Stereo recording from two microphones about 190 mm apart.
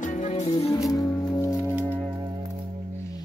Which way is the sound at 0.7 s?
15° left (ahead or behind).